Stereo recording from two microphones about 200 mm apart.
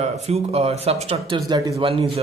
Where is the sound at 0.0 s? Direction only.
30° right (ahead or behind).